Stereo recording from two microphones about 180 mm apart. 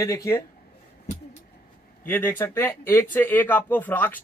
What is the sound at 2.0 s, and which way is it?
Speech, 10° left (ahead or behind).